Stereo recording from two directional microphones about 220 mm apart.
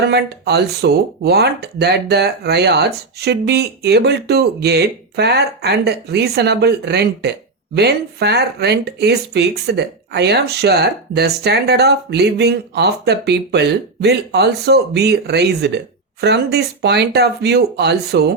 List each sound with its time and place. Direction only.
0.0 s speech: 50° right (ahead or behind)